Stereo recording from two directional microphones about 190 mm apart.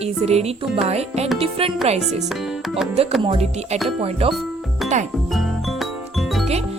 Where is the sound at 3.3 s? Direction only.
35° right (ahead or behind).